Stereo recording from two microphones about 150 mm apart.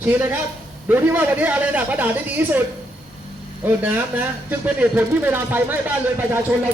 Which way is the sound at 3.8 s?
15° right (ahead or behind).